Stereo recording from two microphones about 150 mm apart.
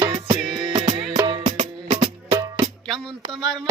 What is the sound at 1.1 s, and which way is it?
Music, 25° right (ahead or behind).